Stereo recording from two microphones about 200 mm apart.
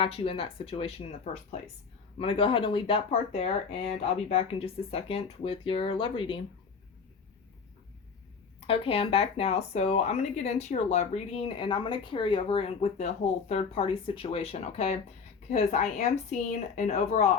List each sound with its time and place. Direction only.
0.0 s speech: 30° left (ahead or behind)
8.6 s speech: 30° left (ahead or behind)